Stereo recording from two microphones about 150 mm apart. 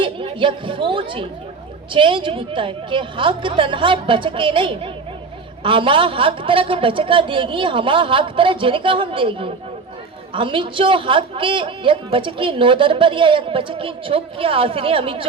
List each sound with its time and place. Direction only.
0.0 s a woman's voice: 35° right (ahead or behind)